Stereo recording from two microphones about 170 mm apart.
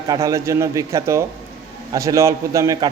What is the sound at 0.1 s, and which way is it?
A man's voice, 20° right (ahead or behind).